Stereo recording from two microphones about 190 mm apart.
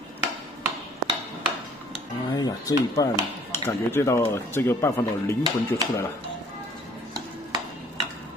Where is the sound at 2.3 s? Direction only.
20° left (ahead or behind).